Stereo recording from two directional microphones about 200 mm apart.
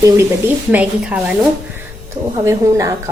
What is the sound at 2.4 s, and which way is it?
Speech, 15° right (ahead or behind).